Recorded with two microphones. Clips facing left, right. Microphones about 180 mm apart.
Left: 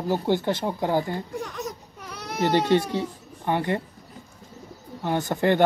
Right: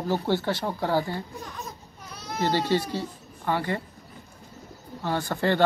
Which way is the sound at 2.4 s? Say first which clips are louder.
Left 4 dB; 20° left (ahead or behind).